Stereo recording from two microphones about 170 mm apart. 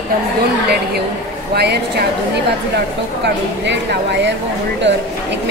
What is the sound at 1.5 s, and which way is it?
Speech, 70° right (ahead or behind).